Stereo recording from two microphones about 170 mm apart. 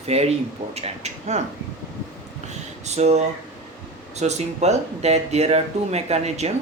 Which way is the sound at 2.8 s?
40° right (ahead or behind).